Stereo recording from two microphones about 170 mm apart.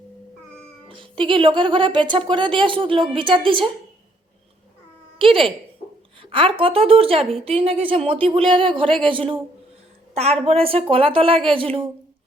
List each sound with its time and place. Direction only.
0.9 s speech: 30° right (ahead or behind)
5.2 s a sound: 30° right (ahead or behind)
6.3 s speech: 30° right (ahead or behind)